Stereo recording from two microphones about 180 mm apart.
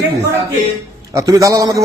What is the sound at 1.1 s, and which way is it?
Speech, 15° right (ahead or behind).